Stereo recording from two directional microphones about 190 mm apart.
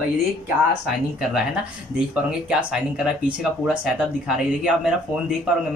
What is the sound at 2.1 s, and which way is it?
Speech, 5° right (ahead or behind).